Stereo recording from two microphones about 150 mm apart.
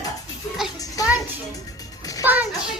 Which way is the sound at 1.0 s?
25° left (ahead or behind).